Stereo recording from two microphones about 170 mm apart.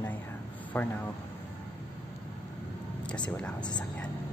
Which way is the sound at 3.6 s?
25° left (ahead or behind).